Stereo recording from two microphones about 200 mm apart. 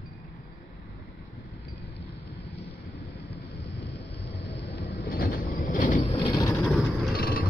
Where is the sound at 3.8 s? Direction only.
60° left (ahead or behind).